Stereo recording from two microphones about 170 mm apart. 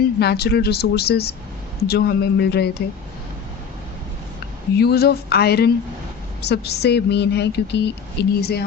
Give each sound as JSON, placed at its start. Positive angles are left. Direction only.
{"t": 0.2, "sound": "speech", "side_deg": 70}
{"t": 4.8, "sound": "speech", "side_deg": 70}